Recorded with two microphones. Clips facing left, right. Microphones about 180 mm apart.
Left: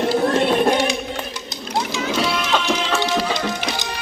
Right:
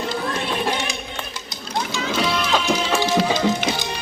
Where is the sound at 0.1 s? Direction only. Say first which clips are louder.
Left 8 dB; 40° left (ahead or behind).